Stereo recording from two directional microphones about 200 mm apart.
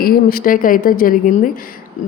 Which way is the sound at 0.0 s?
45° left (ahead or behind).